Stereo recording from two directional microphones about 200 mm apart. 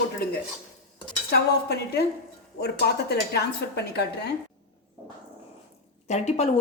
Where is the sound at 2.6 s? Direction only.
55° left (ahead or behind).